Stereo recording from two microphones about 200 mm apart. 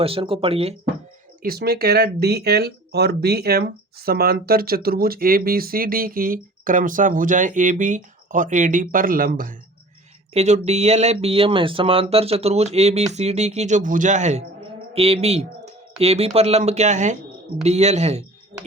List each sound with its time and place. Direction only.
0.0 s speech: 30° right (ahead or behind)
1.4 s speech: 50° right (ahead or behind)
10.3 s speech: 35° right (ahead or behind)